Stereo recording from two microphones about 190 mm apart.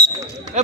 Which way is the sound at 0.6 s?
40° right (ahead or behind).